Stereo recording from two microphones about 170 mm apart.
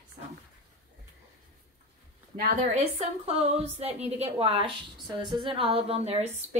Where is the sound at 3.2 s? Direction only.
40° right (ahead or behind).